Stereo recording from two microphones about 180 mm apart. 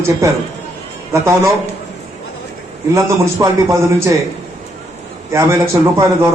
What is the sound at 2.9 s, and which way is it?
A man's voice, 15° right (ahead or behind).